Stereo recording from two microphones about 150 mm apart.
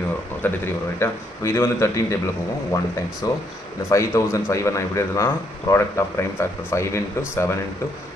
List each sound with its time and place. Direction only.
0.4 s speech: 15° left (ahead or behind)